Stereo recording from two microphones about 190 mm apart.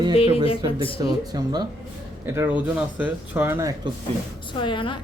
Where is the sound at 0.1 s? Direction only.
30° left (ahead or behind).